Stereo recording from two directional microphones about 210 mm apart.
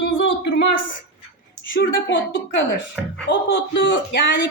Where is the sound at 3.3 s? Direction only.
55° left (ahead or behind).